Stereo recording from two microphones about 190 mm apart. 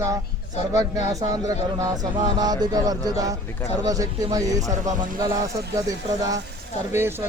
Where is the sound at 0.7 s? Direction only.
20° right (ahead or behind).